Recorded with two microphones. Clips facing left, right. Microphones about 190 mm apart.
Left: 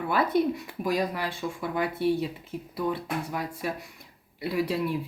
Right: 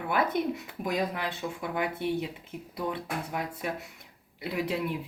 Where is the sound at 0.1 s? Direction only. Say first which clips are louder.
Left 3 dB; 20° right (ahead or behind).